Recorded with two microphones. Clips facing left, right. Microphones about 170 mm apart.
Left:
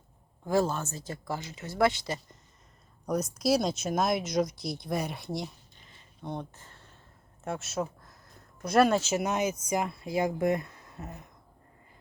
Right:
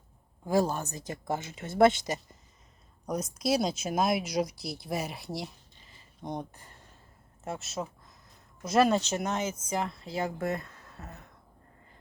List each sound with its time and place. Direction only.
0.4 s speech: 15° right (ahead or behind)
3.3 s speech: centre (ahead or behind)
6.2 s speech: 15° right (ahead or behind)
7.4 s speech: centre (ahead or behind)